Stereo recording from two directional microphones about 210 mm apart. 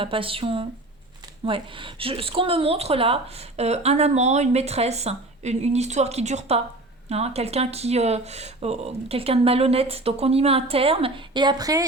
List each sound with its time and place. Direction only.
0.0 s speech: 25° right (ahead or behind)